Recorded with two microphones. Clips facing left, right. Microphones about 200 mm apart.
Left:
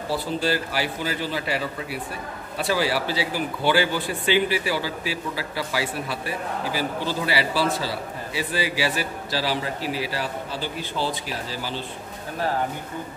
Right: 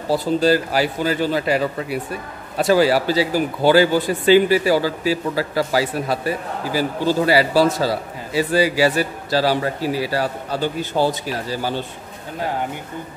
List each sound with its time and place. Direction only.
0.1 s speech: 40° right (ahead or behind)